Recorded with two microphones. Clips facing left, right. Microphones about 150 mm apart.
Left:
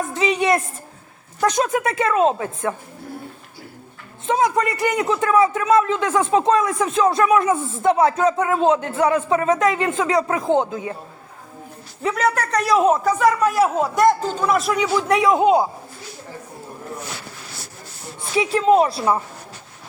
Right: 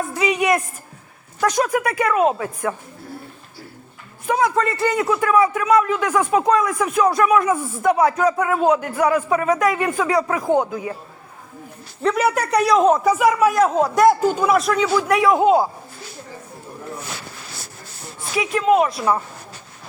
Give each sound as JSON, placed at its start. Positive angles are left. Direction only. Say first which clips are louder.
{"t": 0.1, "sound": "a man's voice", "louder": "even", "side_deg": 25}
{"t": 4.3, "sound": "a man's voice", "louder": "even", "side_deg": 20}
{"t": 12.1, "sound": "speech", "louder": "right 1 dB", "side_deg": -10}
{"t": 12.6, "sound": "a man's voice", "louder": "right 1 dB", "side_deg": 5}
{"t": 13.5, "sound": "a man's voice", "louder": "right 2 dB", "side_deg": 5}
{"t": 14.8, "sound": "a man's voice", "louder": "right 1 dB", "side_deg": 20}
{"t": 18.3, "sound": "speech", "louder": "left 1 dB", "side_deg": 30}